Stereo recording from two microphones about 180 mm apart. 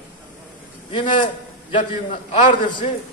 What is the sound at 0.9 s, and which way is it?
A man's voice, 25° left (ahead or behind).